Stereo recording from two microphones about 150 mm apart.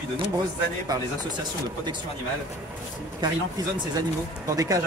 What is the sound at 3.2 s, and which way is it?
Speech, 25° right (ahead or behind).